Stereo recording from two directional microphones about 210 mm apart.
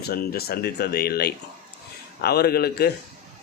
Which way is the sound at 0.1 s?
45° left (ahead or behind).